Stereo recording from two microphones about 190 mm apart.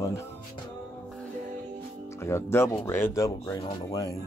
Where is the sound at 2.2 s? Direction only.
15° left (ahead or behind).